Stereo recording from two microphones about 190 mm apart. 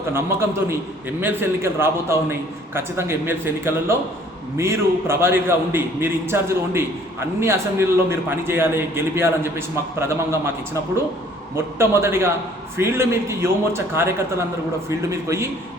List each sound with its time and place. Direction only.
0.1 s a man's voice: 10° right (ahead or behind)
11.5 s a man's voice: 15° right (ahead or behind)